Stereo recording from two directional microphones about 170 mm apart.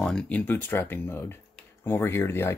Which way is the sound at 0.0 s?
5° left (ahead or behind).